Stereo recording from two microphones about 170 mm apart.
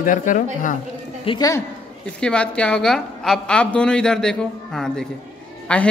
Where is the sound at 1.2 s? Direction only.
30° left (ahead or behind).